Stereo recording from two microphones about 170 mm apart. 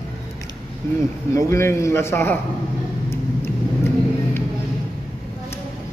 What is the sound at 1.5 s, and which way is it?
Speech, 15° left (ahead or behind).